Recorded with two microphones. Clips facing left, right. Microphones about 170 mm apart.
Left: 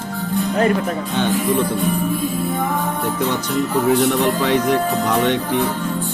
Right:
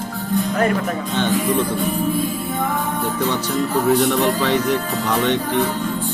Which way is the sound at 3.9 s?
5° left (ahead or behind).